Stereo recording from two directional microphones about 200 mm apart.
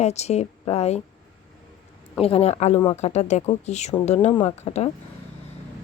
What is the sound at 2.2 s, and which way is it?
Speech, 30° left (ahead or behind).